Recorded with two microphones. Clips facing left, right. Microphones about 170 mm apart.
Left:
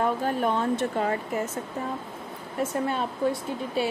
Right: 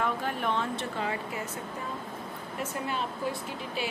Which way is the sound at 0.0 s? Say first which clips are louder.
Left 5 dB; 40° left (ahead or behind).